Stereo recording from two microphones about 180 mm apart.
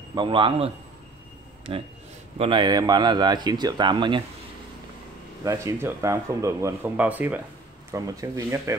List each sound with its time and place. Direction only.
0.1 s a man's voice: 25° right (ahead or behind)
2.3 s a man's voice: 30° right (ahead or behind)
5.4 s speech: 15° right (ahead or behind)